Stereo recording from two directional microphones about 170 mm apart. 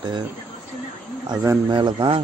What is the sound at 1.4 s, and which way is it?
Speech, 20° right (ahead or behind).